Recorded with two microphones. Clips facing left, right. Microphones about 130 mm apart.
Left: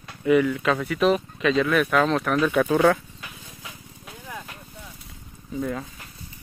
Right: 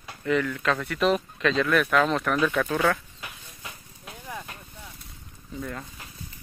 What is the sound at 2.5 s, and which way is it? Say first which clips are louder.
Speech: left 5 dB; 15° left (ahead or behind).